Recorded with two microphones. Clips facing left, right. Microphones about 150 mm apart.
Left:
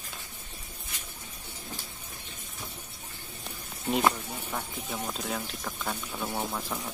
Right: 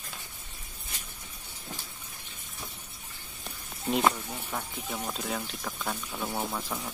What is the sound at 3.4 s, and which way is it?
Speech, centre (ahead or behind).